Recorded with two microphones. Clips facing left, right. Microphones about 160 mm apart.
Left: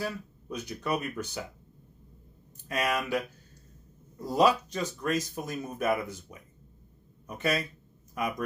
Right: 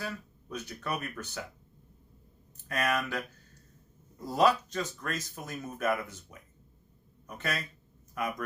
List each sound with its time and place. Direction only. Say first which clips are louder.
0.0 s speech: left 4 dB; 15° left (ahead or behind)
2.6 s speech: left 1 dB; 15° left (ahead or behind)
4.4 s speech: left 2 dB; 15° left (ahead or behind)